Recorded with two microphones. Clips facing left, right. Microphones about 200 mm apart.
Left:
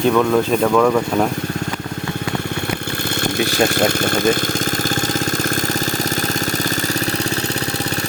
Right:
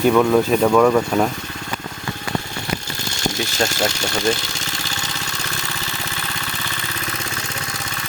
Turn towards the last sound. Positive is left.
turn(degrees=40)  # may be behind; listen again after turning